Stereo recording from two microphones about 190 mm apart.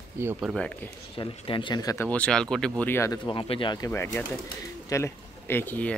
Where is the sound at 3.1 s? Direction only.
25° left (ahead or behind).